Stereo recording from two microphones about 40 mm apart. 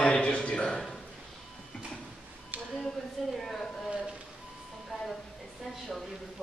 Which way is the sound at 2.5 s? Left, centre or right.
Right.